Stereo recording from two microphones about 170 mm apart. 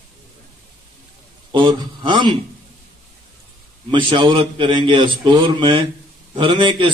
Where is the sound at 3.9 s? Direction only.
30° right (ahead or behind).